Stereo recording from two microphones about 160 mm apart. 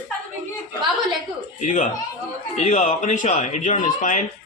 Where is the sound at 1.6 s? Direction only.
50° left (ahead or behind).